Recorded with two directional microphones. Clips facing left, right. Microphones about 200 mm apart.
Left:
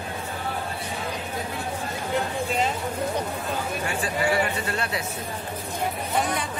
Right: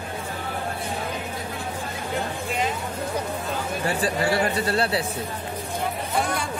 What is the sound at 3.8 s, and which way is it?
Speech, 35° right (ahead or behind).